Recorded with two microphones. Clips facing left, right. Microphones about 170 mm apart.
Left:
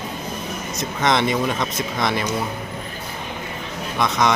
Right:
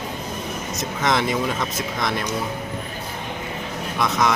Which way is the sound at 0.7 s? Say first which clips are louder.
Left 2 dB; centre (ahead or behind).